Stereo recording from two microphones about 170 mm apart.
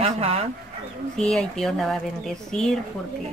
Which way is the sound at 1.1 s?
5° left (ahead or behind).